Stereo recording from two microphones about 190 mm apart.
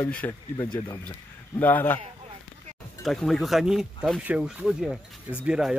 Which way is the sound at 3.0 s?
Centre (ahead or behind).